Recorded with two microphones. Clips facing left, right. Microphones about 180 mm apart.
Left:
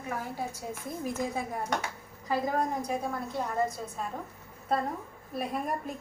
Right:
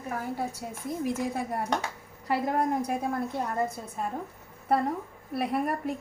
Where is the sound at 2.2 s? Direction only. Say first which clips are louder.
Right 2 dB; 60° right (ahead or behind).